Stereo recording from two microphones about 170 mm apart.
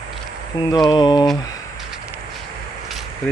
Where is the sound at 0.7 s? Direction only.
25° left (ahead or behind).